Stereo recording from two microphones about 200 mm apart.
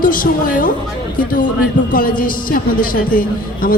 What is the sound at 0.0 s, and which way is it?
Speech, 45° left (ahead or behind).